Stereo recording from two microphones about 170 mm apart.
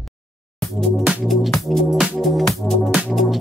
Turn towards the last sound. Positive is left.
turn(degrees=0)  # may be behind; listen again after turning